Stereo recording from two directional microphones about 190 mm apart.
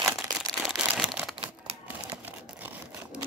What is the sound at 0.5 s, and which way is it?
Crumpling, 5° right (ahead or behind).